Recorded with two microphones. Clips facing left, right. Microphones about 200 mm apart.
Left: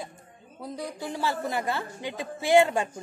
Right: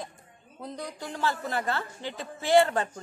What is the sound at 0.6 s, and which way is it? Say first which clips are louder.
A woman's voice: left 3 dB; 10° left (ahead or behind).